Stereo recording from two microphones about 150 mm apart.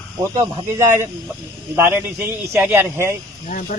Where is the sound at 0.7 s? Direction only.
15° right (ahead or behind).